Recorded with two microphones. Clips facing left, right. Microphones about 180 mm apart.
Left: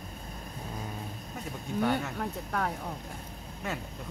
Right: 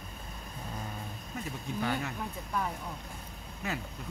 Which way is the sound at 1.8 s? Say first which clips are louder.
Left 5 dB; 70° left (ahead or behind).